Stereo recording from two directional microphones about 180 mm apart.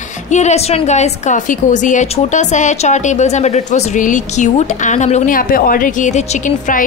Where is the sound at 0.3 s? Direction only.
40° left (ahead or behind).